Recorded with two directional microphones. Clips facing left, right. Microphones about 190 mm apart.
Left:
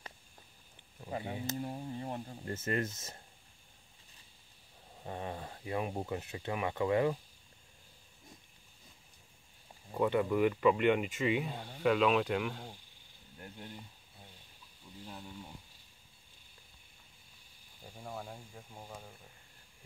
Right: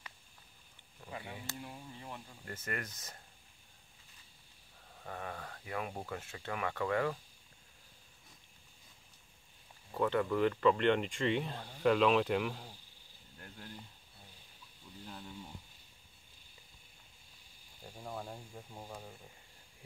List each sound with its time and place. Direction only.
1.1 s speech: 30° left (ahead or behind)
1.6 s speech: 40° left (ahead or behind)
2.4 s speech: 25° left (ahead or behind)
4.9 s speech: 20° left (ahead or behind)
9.9 s speech: 15° left (ahead or behind); by 12.6 s centre (ahead or behind)
17.8 s speech: centre (ahead or behind)